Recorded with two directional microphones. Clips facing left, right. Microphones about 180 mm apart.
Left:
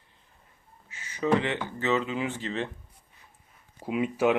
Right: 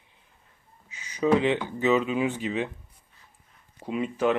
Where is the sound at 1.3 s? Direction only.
15° right (ahead or behind).